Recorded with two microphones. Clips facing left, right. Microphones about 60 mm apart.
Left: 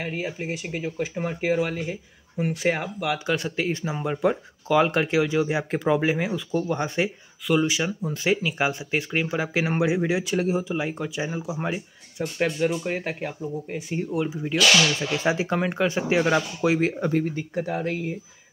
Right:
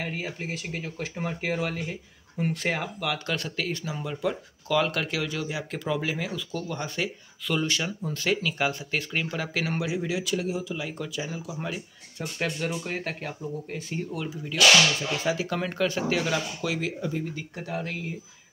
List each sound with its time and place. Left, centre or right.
0.0 s speech: centre
7.4 s speech: centre
12.4 s speech: centre; by 16.9 s left
17.0 s speech: left
17.6 s speech: left